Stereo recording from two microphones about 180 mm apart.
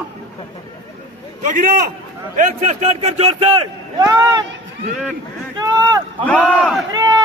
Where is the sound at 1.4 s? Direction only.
45° right (ahead or behind).